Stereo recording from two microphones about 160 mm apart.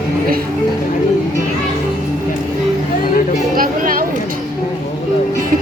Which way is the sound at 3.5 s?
60° right (ahead or behind).